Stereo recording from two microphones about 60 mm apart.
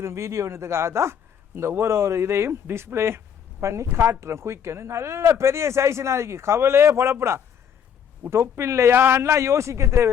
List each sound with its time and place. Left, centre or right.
0.0 s speech: right
3.6 s speech: right